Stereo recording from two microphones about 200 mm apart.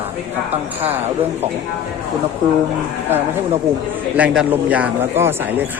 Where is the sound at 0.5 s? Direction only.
30° right (ahead or behind).